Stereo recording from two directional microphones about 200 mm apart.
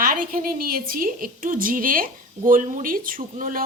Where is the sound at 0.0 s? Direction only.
45° right (ahead or behind).